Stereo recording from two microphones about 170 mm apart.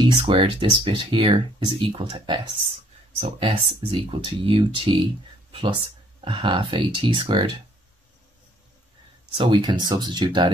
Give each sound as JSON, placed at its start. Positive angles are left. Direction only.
{"t": 0.0, "sound": "speech", "side_deg": -30}
{"t": 9.3, "sound": "speech", "side_deg": -30}